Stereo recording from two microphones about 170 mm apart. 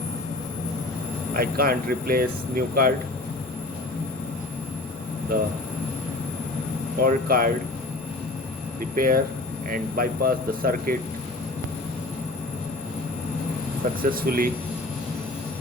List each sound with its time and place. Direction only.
1.3 s speech: 60° right (ahead or behind)
7.0 s speech: 60° right (ahead or behind)
9.0 s speech: 55° right (ahead or behind)
14.0 s speech: 60° right (ahead or behind)